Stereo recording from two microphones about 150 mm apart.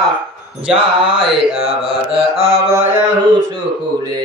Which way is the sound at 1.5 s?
45° right (ahead or behind).